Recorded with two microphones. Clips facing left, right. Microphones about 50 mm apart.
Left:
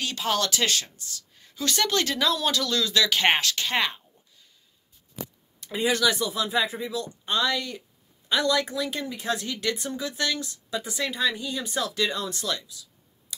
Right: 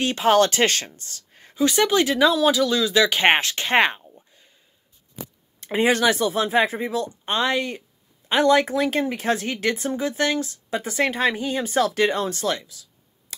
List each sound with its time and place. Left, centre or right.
0.0 s speech: right
0.9 s a sound: right
1.6 s speech: centre; by 4.0 s right
5.6 s speech: right